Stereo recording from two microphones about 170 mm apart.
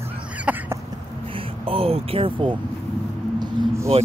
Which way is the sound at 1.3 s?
35° right (ahead or behind).